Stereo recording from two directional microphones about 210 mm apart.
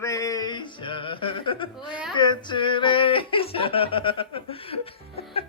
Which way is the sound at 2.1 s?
20° left (ahead or behind).